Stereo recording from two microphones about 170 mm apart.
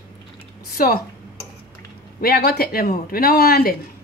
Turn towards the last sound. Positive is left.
turn(degrees=65)  # may be behind; listen again after turning